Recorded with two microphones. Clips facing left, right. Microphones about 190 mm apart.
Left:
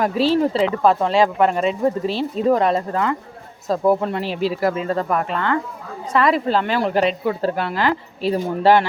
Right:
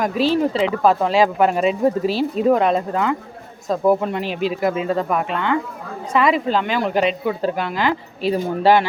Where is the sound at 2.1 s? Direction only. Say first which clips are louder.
Right 2 dB; 25° left (ahead or behind).